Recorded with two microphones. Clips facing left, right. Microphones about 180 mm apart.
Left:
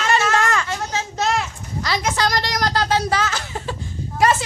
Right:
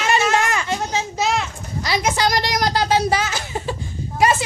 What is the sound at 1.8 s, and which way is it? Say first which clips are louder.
A woman's voice: right 2 dB; 15° right (ahead or behind).